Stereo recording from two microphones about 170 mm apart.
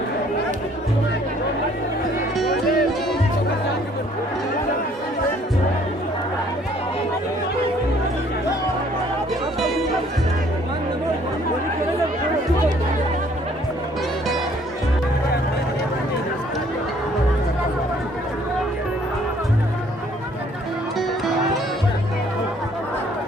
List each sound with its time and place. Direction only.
2.5 s music: 60° left (ahead or behind)